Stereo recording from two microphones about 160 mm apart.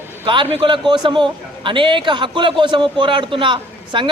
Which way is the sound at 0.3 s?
30° right (ahead or behind).